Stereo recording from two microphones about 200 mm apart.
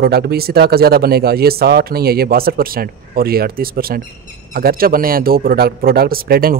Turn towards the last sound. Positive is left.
turn(degrees=-50)  # may be behind; listen again after turning